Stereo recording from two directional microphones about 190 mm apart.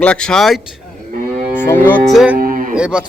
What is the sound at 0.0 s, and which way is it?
A man's voice, 5° left (ahead or behind).